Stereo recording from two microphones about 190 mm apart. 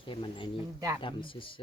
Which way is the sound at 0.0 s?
25° left (ahead or behind).